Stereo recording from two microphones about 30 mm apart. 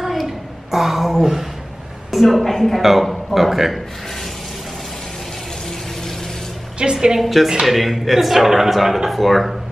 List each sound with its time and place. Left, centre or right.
0.0 s a sound: centre
2.2 s a man's voice: centre
6.8 s a woman's voice: right
7.2 s speech: centre